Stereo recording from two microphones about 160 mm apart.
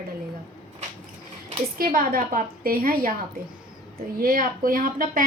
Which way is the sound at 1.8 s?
60° right (ahead or behind).